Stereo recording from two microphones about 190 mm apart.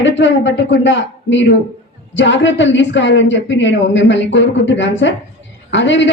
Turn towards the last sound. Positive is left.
turn(degrees=70)  # may be behind; listen again after turning